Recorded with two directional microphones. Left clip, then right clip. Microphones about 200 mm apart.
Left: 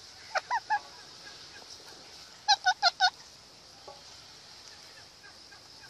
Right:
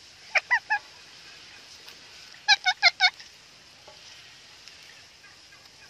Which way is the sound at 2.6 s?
25° right (ahead or behind).